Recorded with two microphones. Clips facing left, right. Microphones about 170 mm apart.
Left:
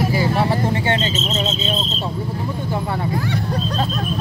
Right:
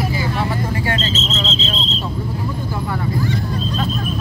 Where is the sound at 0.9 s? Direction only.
20° left (ahead or behind).